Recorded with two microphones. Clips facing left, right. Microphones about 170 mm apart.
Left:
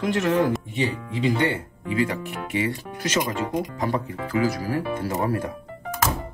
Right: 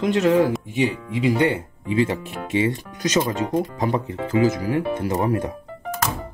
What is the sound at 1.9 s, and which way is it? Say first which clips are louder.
Speech: right 3 dB; 25° right (ahead or behind).